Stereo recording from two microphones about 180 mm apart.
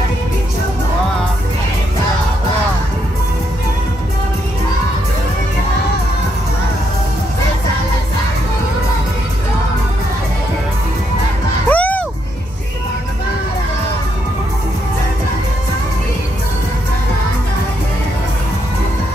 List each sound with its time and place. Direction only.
11.7 s music: 10° left (ahead or behind)